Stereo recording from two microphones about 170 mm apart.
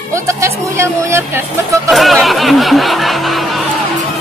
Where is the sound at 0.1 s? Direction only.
15° right (ahead or behind).